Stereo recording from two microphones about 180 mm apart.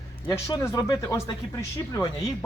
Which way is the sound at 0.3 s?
20° left (ahead or behind).